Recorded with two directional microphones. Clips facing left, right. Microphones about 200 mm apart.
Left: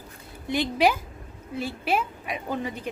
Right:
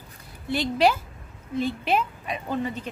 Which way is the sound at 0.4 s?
15° left (ahead or behind).